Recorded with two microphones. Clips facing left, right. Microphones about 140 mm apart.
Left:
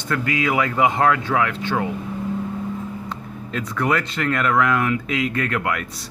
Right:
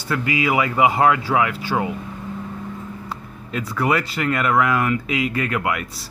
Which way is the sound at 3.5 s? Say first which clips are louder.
Right 1 dB; 5° right (ahead or behind).